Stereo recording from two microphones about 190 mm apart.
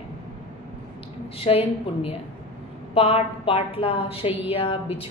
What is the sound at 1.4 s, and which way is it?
A woman's voice, 30° left (ahead or behind).